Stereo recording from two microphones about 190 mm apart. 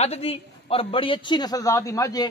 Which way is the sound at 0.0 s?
30° left (ahead or behind).